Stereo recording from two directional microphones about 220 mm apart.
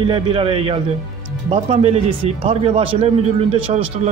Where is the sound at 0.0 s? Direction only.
25° right (ahead or behind).